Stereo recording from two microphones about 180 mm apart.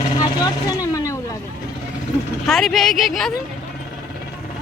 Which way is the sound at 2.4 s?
Centre (ahead or behind).